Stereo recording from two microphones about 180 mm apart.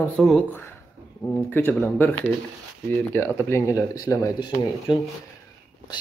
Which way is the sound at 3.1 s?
15° left (ahead or behind).